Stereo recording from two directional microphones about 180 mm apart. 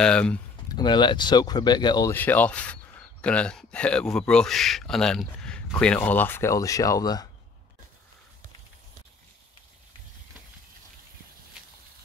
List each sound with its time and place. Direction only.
0.0 s speech: 5° left (ahead or behind)
0.7 s speech: 25° left (ahead or behind)
2.1 s speech: 10° left (ahead or behind)